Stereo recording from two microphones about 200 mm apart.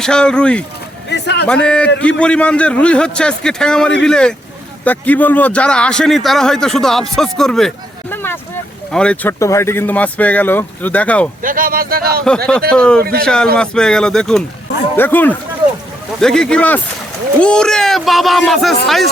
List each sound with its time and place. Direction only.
0.0 s a man's voice: 5° left (ahead or behind)
1.1 s a sound: 55° left (ahead or behind)
1.5 s a man's voice: 5° left (ahead or behind)
8.1 s vehicle: 10° left (ahead or behind)
8.9 s speech: 5° left (ahead or behind)
11.4 s speech: 45° right (ahead or behind)
12.7 s a man's voice: 5° left (ahead or behind)
13.0 s speech: 50° right (ahead or behind)
13.2 s a man's voice: 5° left (ahead or behind)